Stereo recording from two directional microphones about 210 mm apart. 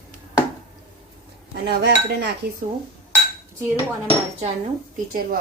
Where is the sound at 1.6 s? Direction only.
50° right (ahead or behind).